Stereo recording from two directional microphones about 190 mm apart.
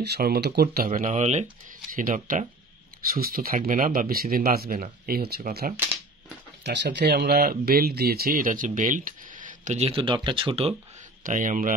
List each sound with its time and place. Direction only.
0.0 s speech: 55° right (ahead or behind)
6.6 s speech: 65° right (ahead or behind); by 10.8 s 30° right (ahead or behind)
11.2 s speech: 45° right (ahead or behind)